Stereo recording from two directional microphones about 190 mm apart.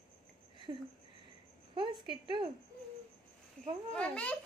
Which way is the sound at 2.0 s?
25° right (ahead or behind).